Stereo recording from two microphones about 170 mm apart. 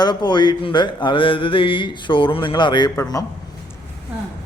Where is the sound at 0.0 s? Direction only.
25° left (ahead or behind).